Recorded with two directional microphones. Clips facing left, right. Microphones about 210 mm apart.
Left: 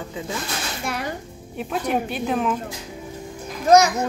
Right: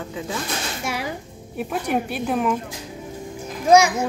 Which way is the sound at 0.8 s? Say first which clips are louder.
Even; 5° right (ahead or behind).